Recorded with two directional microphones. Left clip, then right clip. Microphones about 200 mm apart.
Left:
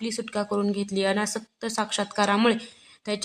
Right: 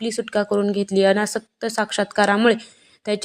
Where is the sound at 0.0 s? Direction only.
20° right (ahead or behind).